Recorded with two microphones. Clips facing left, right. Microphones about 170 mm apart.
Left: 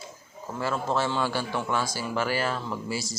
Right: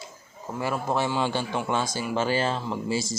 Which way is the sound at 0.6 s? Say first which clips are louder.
Right 1 dB; 15° right (ahead or behind).